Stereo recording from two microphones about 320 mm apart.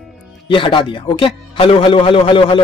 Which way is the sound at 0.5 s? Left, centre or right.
Centre.